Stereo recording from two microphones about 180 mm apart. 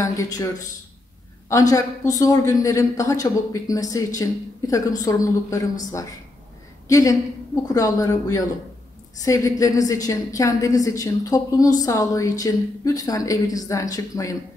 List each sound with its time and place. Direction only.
0.0 s a woman's voice: 20° left (ahead or behind)
1.5 s a woman's voice: 20° left (ahead or behind)
6.9 s a woman's voice: 20° left (ahead or behind)